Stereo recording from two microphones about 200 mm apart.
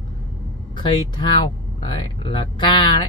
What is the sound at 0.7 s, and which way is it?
Speech, 25° left (ahead or behind).